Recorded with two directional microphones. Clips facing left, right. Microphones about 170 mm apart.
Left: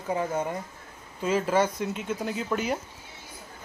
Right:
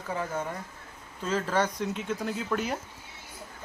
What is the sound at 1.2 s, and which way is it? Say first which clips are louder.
Speech: left 4 dB; 10° left (ahead or behind).